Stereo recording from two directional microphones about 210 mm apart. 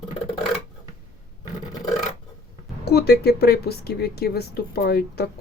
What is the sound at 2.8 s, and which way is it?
A woman's voice, 50° left (ahead or behind).